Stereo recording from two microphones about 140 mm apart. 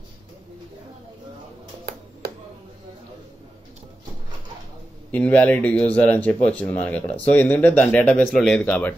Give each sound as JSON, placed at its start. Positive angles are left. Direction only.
{"t": 5.1, "sound": "speech", "side_deg": 10}